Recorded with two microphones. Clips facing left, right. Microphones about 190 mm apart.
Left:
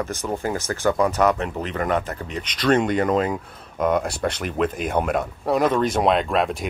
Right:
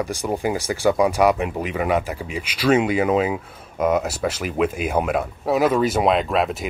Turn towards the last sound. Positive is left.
turn(degrees=0)  # may be behind; listen again after turning